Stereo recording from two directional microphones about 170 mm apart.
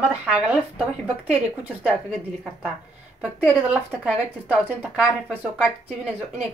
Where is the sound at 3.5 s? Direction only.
5° right (ahead or behind).